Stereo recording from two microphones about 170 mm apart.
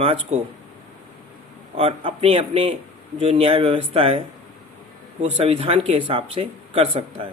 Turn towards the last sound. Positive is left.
turn(degrees=-30)  # may be behind; listen again after turning